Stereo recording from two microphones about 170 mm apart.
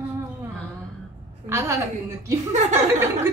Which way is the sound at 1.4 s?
15° right (ahead or behind).